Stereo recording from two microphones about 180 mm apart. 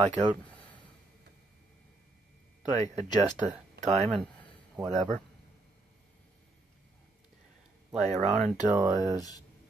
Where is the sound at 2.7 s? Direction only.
40° right (ahead or behind).